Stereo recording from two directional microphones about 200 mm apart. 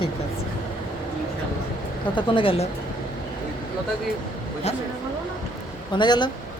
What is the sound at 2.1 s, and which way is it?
Speech, 25° left (ahead or behind).